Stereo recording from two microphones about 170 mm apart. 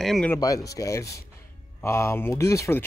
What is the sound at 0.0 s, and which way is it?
Speech, centre (ahead or behind).